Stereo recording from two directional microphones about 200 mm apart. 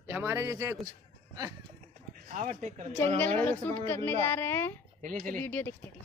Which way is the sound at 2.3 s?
35° right (ahead or behind).